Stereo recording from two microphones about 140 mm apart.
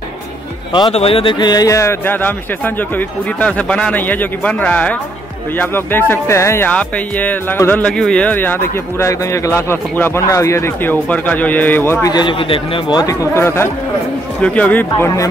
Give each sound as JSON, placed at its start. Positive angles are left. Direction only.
{"t": 0.9, "sound": "speech", "side_deg": 45}
{"t": 12.1, "sound": "speech", "side_deg": 35}
{"t": 13.3, "sound": "speech", "side_deg": 20}